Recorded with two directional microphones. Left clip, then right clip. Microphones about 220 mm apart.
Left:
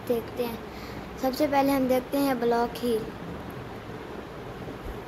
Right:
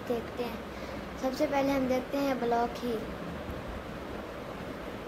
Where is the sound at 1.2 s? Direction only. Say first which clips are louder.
Left 5 dB; 25° left (ahead or behind).